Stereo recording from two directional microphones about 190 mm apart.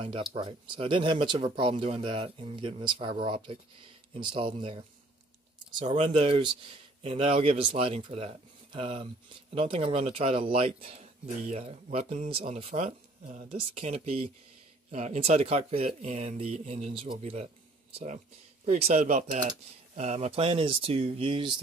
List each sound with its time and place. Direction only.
0.0 s speech: 25° right (ahead or behind)